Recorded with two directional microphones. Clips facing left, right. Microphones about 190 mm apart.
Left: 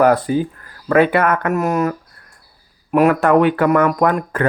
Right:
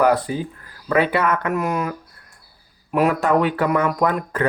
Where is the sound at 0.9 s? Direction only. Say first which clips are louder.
Left 5 dB; 50° left (ahead or behind).